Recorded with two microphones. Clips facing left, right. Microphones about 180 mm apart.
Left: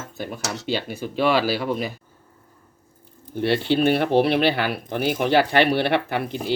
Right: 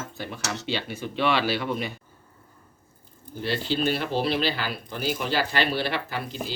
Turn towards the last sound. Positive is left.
turn(degrees=60)  # may be behind; listen again after turning